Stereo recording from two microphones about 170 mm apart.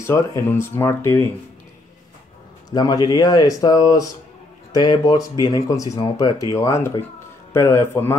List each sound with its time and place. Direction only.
0.0 s speech: 15° left (ahead or behind)
2.7 s speech: 20° left (ahead or behind)